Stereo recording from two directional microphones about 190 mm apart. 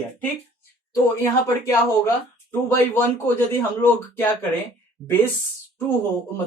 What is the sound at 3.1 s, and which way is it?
Speech, 10° left (ahead or behind).